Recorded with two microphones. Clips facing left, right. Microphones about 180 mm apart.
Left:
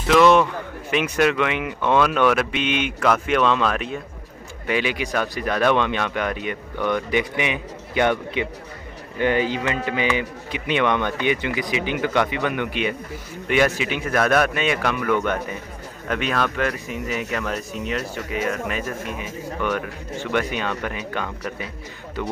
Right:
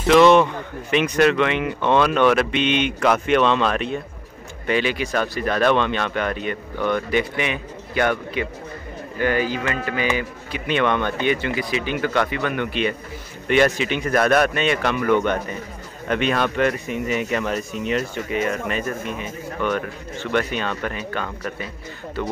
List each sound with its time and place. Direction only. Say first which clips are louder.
0.0 s speech: right 2 dB; 5° left (ahead or behind)